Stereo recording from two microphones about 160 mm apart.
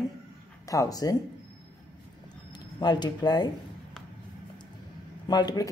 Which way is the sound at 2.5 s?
25° left (ahead or behind).